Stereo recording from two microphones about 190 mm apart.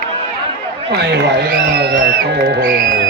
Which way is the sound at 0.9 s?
60° right (ahead or behind).